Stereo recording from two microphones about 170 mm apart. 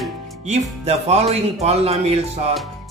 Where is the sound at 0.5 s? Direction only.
40° right (ahead or behind).